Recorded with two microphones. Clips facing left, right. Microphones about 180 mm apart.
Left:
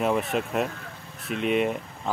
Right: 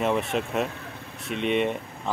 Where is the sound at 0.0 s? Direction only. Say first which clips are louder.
Even; centre (ahead or behind).